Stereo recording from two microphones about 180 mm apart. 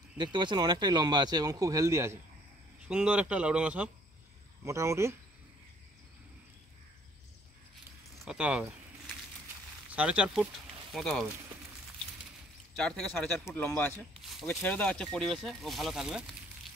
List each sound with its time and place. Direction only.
0.2 s speech: 25° right (ahead or behind)
8.3 s a sound: 5° right (ahead or behind)
9.8 s speech: 5° right (ahead or behind)
12.7 s speech: 5° left (ahead or behind)